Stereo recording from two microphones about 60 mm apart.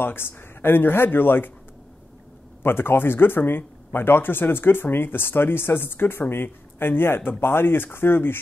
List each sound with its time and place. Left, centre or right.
0.0 s speech: left
2.6 s speech: left